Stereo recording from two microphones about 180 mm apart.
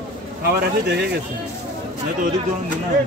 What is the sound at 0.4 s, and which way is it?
Speech, 60° right (ahead or behind).